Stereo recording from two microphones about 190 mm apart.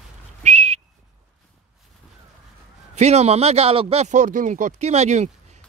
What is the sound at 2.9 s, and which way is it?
Speech, 35° right (ahead or behind).